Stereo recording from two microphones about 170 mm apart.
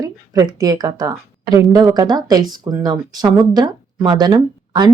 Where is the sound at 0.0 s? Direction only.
20° right (ahead or behind).